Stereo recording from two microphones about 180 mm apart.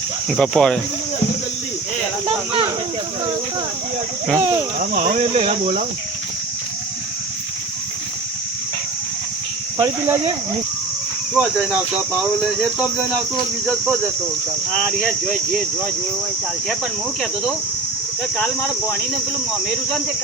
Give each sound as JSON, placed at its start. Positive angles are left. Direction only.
{"t": 0.3, "sound": "speech", "side_deg": 5}
{"t": 2.2, "sound": "speech", "side_deg": -30}
{"t": 4.4, "sound": "speech", "side_deg": -15}
{"t": 4.8, "sound": "speech", "side_deg": -45}
{"t": 5.2, "sound": "speech", "side_deg": -35}
{"t": 9.7, "sound": "speech", "side_deg": -20}
{"t": 11.3, "sound": "speech", "side_deg": -5}
{"t": 14.7, "sound": "speech", "side_deg": 5}
{"t": 18.3, "sound": "speech", "side_deg": 10}